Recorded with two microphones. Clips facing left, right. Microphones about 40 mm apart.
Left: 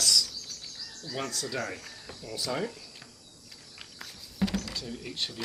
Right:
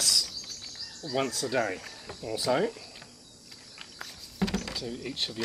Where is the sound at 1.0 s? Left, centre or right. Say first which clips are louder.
Right 5 dB; right.